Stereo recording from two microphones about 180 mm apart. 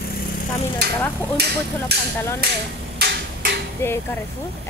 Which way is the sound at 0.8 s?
65° right (ahead or behind).